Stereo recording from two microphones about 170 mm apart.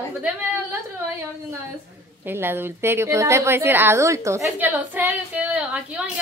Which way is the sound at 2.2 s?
15° right (ahead or behind).